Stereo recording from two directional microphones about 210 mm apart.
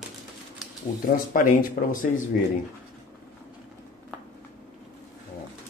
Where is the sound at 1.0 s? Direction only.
40° left (ahead or behind).